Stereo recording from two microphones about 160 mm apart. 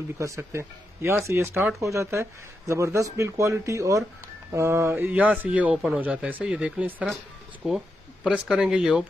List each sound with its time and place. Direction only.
0.2 s a man's voice: 15° right (ahead or behind)